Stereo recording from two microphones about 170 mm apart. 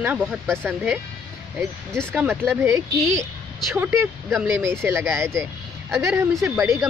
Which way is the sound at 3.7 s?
15° right (ahead or behind).